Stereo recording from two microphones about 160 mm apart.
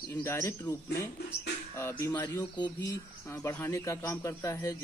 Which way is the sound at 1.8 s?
15° left (ahead or behind).